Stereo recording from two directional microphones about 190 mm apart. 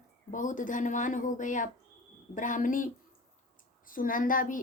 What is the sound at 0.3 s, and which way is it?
A woman's voice, 40° left (ahead or behind).